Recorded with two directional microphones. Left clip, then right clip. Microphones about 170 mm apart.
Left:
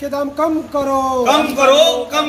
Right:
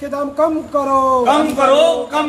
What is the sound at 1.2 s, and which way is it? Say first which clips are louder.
Speech: left 1 dB; 30° left (ahead or behind).